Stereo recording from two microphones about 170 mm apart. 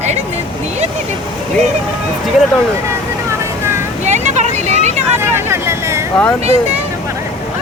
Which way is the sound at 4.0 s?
45° right (ahead or behind).